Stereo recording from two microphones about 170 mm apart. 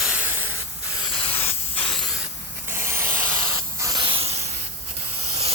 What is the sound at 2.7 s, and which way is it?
Spray, 15° right (ahead or behind).